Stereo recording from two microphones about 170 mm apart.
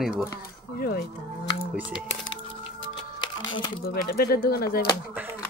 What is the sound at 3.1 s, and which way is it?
Music, 25° left (ahead or behind).